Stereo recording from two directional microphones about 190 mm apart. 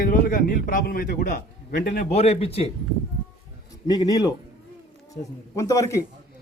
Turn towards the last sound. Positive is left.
turn(degrees=15)  # may be behind; listen again after turning